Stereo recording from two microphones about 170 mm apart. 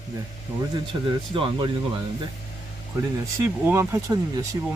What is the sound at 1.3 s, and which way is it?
Speech, 30° right (ahead or behind).